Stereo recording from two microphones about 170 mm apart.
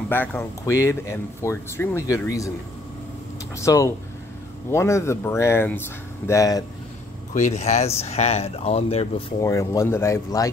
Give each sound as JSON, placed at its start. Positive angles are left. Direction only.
{"t": 0.1, "sound": "speech", "side_deg": 10}
{"t": 3.5, "sound": "speech", "side_deg": 20}
{"t": 7.3, "sound": "speech", "side_deg": 45}
{"t": 9.4, "sound": "speech", "side_deg": 15}